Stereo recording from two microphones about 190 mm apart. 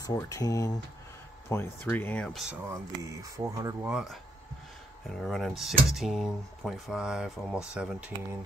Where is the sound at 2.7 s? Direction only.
15° right (ahead or behind).